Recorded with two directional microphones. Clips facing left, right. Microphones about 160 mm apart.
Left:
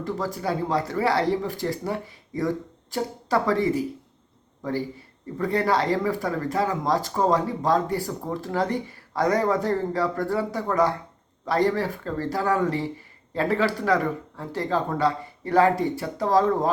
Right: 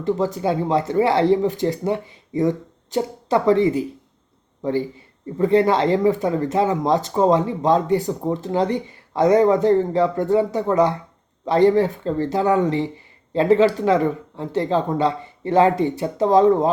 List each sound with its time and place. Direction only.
0.0 s speech: 25° right (ahead or behind)
5.4 s speech: 20° right (ahead or behind)